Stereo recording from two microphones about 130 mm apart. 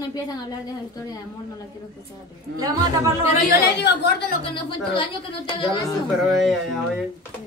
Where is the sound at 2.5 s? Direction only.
25° right (ahead or behind).